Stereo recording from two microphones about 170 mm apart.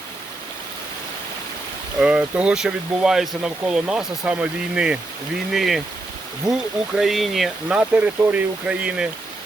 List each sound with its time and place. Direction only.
2.0 s speech: 5° right (ahead or behind)